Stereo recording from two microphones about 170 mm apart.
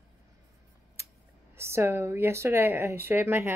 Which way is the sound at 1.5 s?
15° right (ahead or behind).